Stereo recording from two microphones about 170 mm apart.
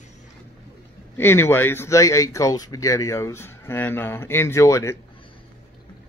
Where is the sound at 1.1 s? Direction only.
15° left (ahead or behind).